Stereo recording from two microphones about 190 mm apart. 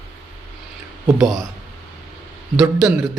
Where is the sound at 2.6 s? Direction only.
5° right (ahead or behind).